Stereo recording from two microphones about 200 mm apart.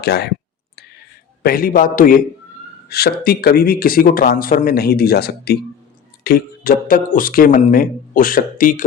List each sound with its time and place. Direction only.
0.0 s speech: 55° left (ahead or behind)
1.4 s speech: 45° left (ahead or behind)